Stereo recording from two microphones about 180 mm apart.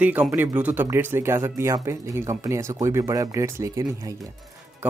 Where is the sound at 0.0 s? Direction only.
10° right (ahead or behind).